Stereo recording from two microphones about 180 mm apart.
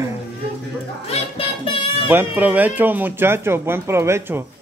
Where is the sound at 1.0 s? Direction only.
30° left (ahead or behind).